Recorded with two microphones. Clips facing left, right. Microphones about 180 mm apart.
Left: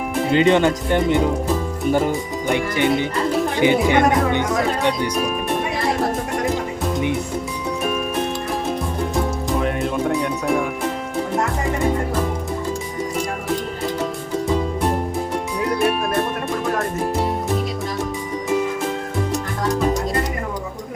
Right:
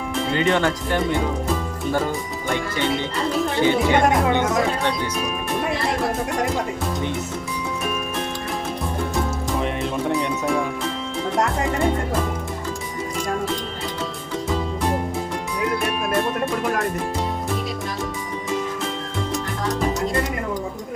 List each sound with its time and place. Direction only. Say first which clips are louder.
0.3 s speech: left 5 dB; 20° left (ahead or behind)
9.6 s music: left 3 dB; centre (ahead or behind)